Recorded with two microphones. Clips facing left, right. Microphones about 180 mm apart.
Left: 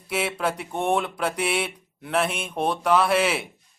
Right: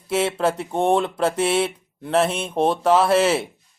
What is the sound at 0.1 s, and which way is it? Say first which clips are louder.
Speech: right 5 dB; 25° right (ahead or behind).